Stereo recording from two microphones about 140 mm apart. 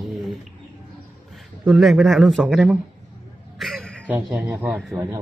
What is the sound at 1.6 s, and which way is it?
Speech, centre (ahead or behind).